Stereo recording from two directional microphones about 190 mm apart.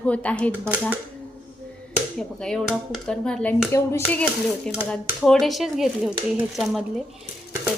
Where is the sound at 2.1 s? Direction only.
5° left (ahead or behind).